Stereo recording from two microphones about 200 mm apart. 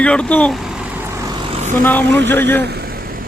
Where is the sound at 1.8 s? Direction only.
10° left (ahead or behind).